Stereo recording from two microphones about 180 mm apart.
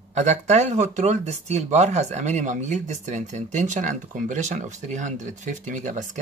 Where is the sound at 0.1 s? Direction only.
40° right (ahead or behind).